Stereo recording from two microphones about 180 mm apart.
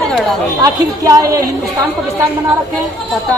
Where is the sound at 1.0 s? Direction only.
20° right (ahead or behind).